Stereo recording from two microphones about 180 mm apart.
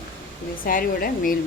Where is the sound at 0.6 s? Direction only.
50° left (ahead or behind).